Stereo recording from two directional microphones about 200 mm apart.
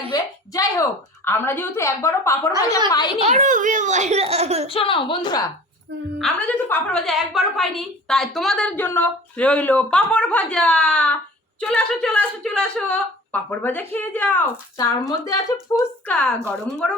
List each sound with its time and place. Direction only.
0.1 s a woman's voice: 15° left (ahead or behind)
3.2 s a child's voice: 35° right (ahead or behind)
4.7 s a woman's voice: 25° left (ahead or behind)
6.1 s a woman's voice: 5° left (ahead or behind)
15.7 s a woman's voice: 5° left (ahead or behind)